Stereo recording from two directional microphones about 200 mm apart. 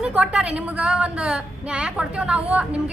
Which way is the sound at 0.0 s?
5° right (ahead or behind).